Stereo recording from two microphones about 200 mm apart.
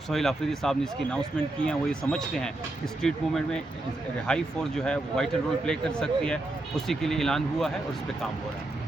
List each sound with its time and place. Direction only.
0.1 s speech: centre (ahead or behind)